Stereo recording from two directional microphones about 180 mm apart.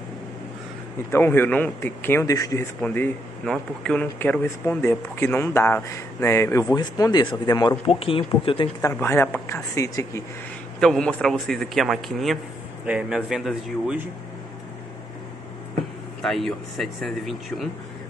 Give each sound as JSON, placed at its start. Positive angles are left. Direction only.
{"t": 1.1, "sound": "a man's voice", "side_deg": 10}
{"t": 8.8, "sound": "a man's voice", "side_deg": 15}
{"t": 10.8, "sound": "a man's voice", "side_deg": 5}
{"t": 16.2, "sound": "a man's voice", "side_deg": 0}